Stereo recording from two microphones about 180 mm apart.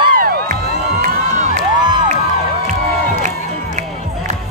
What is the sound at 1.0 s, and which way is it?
Crowd, 45° right (ahead or behind).